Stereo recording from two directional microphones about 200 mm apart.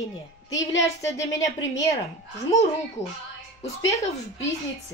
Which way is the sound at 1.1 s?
15° left (ahead or behind).